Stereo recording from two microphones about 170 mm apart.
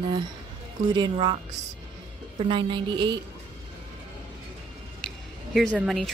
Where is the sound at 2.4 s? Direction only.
30° right (ahead or behind).